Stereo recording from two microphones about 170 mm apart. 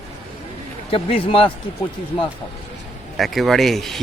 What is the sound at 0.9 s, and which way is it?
Speech, 35° left (ahead or behind).